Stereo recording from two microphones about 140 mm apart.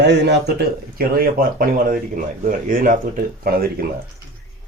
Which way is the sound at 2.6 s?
70° right (ahead or behind).